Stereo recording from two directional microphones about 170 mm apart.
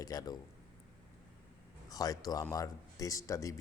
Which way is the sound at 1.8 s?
20° left (ahead or behind).